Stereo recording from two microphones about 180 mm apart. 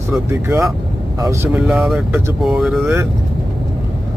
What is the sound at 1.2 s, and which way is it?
Speech, 15° right (ahead or behind).